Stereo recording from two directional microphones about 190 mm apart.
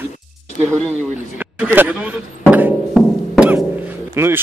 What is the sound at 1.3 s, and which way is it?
Music, 10° right (ahead or behind).